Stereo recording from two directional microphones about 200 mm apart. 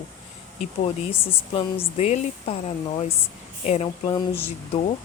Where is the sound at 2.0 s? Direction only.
35° left (ahead or behind).